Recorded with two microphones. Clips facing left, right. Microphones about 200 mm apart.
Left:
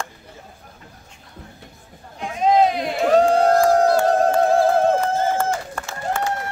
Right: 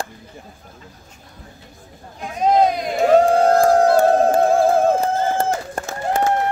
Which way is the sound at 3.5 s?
50° right (ahead or behind).